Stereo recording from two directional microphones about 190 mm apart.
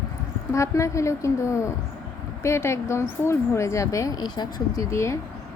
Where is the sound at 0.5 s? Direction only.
15° left (ahead or behind).